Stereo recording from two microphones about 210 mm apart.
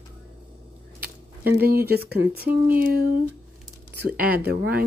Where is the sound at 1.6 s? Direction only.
50° right (ahead or behind).